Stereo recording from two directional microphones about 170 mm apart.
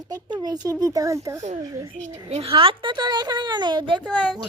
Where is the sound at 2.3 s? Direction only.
35° right (ahead or behind).